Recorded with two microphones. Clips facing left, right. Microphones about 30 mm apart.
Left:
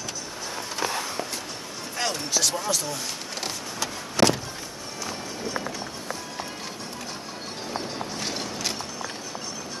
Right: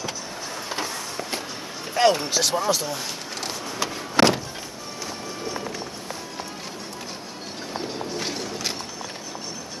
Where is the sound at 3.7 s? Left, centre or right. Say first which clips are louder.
Right 3 dB; centre.